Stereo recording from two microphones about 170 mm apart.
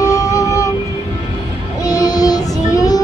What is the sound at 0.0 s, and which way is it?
Music, 20° left (ahead or behind).